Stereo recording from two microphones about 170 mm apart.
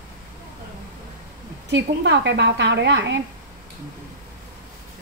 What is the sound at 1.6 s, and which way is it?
A woman's voice, 90° right.